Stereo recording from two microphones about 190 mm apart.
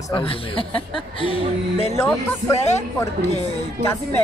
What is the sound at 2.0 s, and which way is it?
Speech, 15° left (ahead or behind).